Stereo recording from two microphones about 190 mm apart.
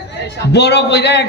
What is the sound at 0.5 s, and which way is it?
Speech, 65° left (ahead or behind).